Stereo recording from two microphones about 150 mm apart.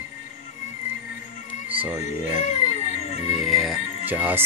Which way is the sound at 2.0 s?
55° left (ahead or behind).